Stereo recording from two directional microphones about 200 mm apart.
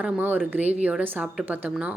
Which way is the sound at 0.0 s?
10° right (ahead or behind).